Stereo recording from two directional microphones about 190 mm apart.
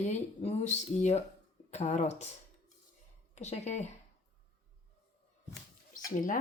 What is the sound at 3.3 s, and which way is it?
Speech, 35° left (ahead or behind).